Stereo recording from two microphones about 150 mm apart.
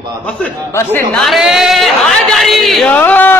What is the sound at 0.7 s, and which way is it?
Speech, 15° left (ahead or behind).